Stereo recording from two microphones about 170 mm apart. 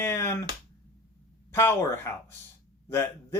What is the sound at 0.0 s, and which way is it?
Speech, 15° left (ahead or behind).